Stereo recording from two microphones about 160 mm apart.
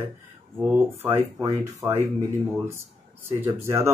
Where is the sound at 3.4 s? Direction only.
15° right (ahead or behind).